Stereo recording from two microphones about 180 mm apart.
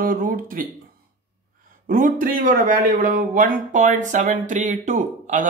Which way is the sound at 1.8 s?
50° right (ahead or behind).